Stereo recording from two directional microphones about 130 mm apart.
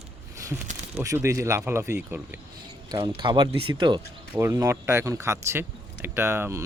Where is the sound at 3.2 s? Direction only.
35° right (ahead or behind).